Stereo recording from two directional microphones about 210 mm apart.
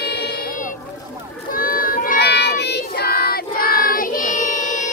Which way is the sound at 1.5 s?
40° left (ahead or behind).